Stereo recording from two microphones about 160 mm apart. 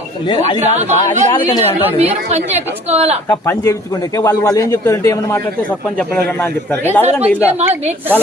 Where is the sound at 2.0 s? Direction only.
40° right (ahead or behind).